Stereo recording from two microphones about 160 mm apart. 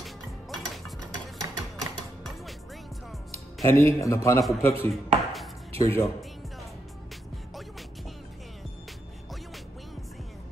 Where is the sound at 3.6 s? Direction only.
20° left (ahead or behind).